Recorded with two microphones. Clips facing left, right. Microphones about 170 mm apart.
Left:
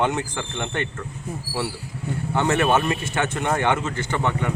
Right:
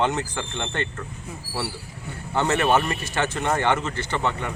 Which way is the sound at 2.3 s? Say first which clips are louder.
Left 1 dB; 15° left (ahead or behind).